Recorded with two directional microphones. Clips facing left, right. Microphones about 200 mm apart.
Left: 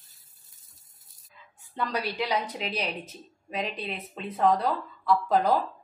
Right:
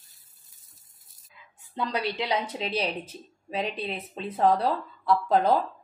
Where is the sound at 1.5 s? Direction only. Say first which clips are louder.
Right 1 dB; 20° right (ahead or behind).